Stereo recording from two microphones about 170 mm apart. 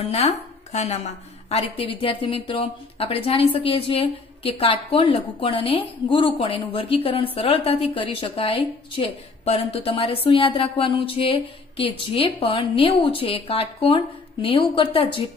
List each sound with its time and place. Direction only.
0.0 s a woman's voice: 40° left (ahead or behind)